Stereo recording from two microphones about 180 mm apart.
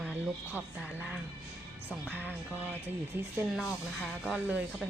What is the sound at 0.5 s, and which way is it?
Speech, 10° right (ahead or behind).